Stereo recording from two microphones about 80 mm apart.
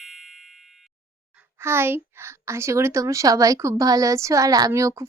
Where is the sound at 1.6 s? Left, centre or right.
Right.